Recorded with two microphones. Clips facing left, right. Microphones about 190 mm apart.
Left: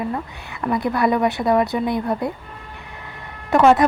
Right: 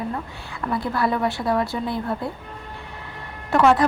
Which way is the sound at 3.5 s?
20° left (ahead or behind).